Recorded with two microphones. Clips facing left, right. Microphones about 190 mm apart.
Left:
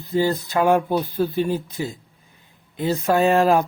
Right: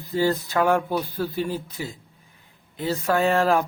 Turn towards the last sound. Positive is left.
turn(degrees=15)  # may be behind; listen again after turning